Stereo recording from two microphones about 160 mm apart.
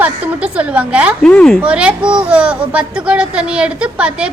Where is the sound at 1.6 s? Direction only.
5° right (ahead or behind).